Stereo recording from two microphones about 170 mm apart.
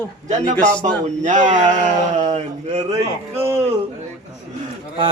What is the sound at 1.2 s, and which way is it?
Speech, 45° right (ahead or behind).